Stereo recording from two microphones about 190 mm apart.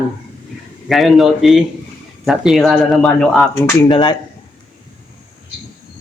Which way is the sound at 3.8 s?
25° left (ahead or behind).